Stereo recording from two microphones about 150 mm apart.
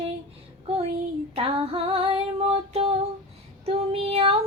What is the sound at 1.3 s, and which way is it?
Female singing, 40° right (ahead or behind).